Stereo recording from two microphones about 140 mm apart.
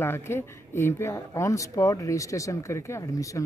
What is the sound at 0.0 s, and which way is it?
A man's voice, 15° left (ahead or behind).